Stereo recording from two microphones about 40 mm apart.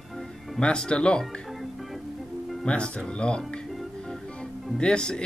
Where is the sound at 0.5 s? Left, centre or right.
Left.